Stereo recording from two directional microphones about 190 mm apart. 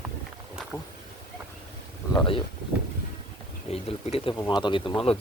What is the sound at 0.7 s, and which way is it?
Speech, 10° left (ahead or behind).